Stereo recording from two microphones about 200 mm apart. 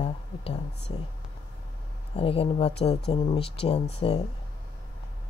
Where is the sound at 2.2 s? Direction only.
30° left (ahead or behind).